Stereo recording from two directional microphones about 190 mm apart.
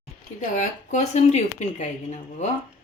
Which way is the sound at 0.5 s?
40° left (ahead or behind).